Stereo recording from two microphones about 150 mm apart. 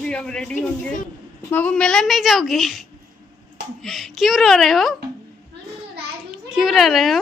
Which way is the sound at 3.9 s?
Centre (ahead or behind).